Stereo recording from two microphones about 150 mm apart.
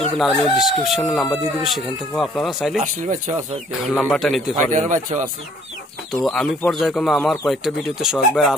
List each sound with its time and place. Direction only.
0.2 s speech: centre (ahead or behind)
2.8 s speech: 55° right (ahead or behind)
3.9 s speech: 5° left (ahead or behind)
4.6 s speech: 55° right (ahead or behind)
6.2 s speech: 5° left (ahead or behind)